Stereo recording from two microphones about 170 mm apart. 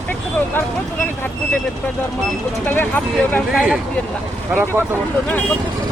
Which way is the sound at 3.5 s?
Centre (ahead or behind).